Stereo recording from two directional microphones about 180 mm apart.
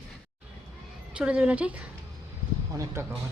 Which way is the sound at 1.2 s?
5° right (ahead or behind).